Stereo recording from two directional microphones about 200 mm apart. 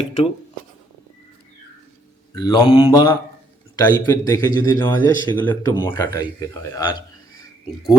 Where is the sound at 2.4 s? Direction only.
20° left (ahead or behind).